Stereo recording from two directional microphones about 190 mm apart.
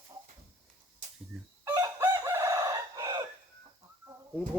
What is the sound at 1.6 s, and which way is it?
Chicken, 15° right (ahead or behind).